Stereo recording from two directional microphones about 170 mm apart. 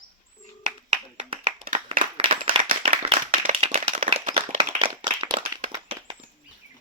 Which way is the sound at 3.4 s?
40° right (ahead or behind).